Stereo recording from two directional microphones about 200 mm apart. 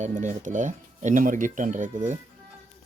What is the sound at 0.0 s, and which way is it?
Speech, 40° right (ahead or behind).